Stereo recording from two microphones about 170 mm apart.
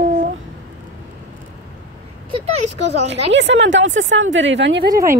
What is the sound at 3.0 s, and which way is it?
A woman's voice, 90° right.